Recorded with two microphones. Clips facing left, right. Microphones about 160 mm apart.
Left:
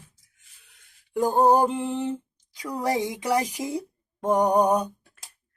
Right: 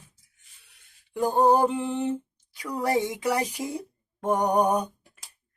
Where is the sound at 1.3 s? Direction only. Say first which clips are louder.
Left 1 dB; 15° left (ahead or behind).